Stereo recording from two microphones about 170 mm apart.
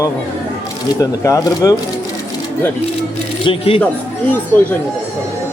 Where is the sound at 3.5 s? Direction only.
30° left (ahead or behind).